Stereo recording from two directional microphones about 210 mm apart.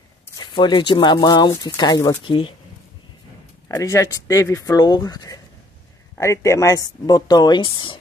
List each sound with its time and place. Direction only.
0.4 s speech: 20° left (ahead or behind)
3.6 s speech: 15° left (ahead or behind)